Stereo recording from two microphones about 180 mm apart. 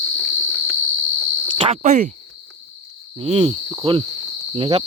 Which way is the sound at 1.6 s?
40° right (ahead or behind).